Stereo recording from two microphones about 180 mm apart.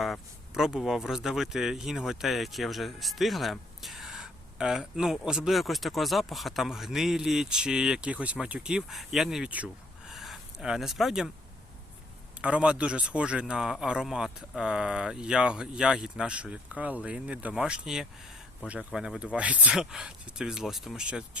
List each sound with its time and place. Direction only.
0.0 s speech: centre (ahead or behind)
10.1 s a sound: centre (ahead or behind)
12.4 s speech: 5° right (ahead or behind)